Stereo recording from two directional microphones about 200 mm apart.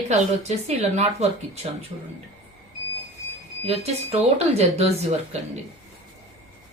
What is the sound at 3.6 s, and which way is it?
A woman's voice, 30° right (ahead or behind).